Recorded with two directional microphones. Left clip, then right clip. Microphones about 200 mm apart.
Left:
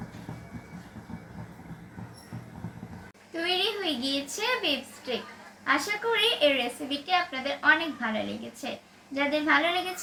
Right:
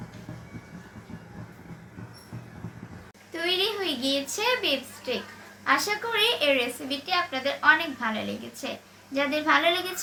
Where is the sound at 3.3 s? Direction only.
45° right (ahead or behind).